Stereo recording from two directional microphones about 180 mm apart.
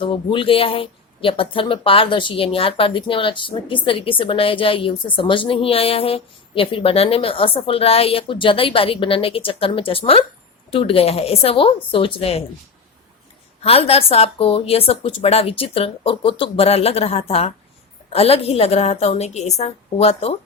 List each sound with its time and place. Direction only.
0.0 s speech: 30° left (ahead or behind)
13.6 s speech: 35° left (ahead or behind)